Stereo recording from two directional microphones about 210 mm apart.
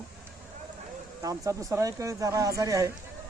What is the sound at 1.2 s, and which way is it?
Speech, 15° right (ahead or behind).